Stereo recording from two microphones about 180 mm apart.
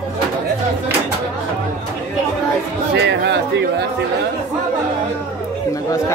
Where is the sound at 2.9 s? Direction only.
70° right (ahead or behind).